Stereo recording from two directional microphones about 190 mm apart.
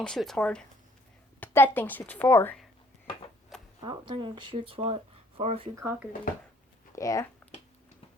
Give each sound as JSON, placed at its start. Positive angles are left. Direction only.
{"t": 0.0, "sound": "a woman's voice", "side_deg": 5}
{"t": 3.8, "sound": "speech", "side_deg": -25}
{"t": 5.7, "sound": "speech", "side_deg": -15}
{"t": 6.9, "sound": "a woman's voice", "side_deg": 15}